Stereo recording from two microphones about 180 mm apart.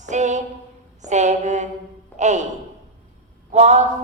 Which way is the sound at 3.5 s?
40° right (ahead or behind).